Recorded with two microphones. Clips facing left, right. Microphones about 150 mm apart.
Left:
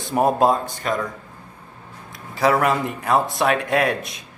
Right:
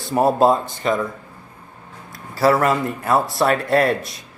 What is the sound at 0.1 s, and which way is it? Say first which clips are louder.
Speech: right 2 dB; centre (ahead or behind).